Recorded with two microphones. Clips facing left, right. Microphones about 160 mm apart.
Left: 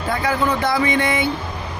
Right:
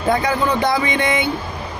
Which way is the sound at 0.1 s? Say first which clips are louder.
Right 2 dB; 20° right (ahead or behind).